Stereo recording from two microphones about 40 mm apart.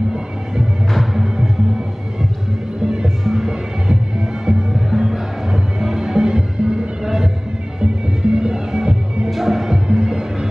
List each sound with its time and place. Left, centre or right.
0.9 s music: centre
2.8 s music: centre
3.3 s music: centre; by 6.8 s right
7.8 s music: centre
9.3 s music: centre